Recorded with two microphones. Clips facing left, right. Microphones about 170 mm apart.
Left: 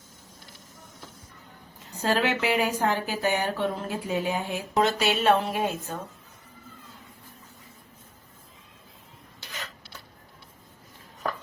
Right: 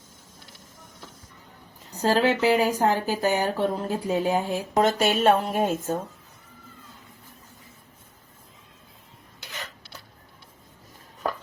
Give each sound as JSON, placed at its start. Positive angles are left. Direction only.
{"t": 1.9, "sound": "speech", "side_deg": -35}